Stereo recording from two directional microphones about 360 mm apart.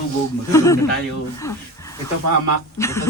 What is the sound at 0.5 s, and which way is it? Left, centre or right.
Speech, centre.